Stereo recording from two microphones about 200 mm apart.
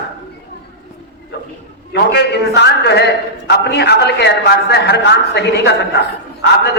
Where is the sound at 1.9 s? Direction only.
55° left (ahead or behind).